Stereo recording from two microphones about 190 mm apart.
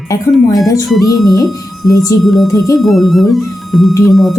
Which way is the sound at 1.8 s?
15° left (ahead or behind).